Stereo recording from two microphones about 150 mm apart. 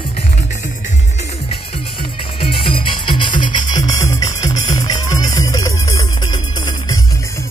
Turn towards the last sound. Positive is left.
turn(degrees=30)  # may be behind; listen again after turning